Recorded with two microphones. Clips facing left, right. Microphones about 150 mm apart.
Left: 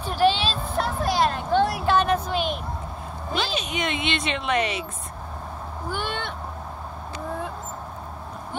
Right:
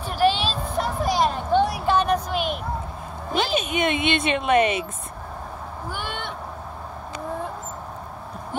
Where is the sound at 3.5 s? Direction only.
50° right (ahead or behind).